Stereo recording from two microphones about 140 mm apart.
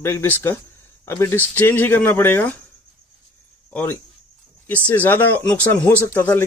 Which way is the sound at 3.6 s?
10° left (ahead or behind).